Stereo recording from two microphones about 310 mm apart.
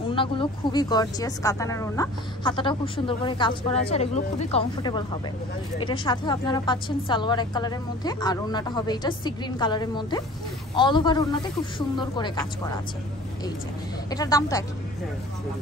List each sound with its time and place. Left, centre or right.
0.1 s a woman's voice: centre
14.1 s a woman's voice: centre